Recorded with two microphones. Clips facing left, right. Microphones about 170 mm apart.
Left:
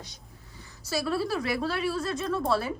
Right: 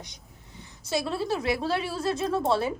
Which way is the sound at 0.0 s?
20° right (ahead or behind).